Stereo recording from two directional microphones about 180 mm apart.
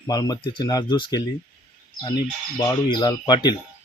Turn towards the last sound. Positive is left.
turn(degrees=25)  # may be behind; listen again after turning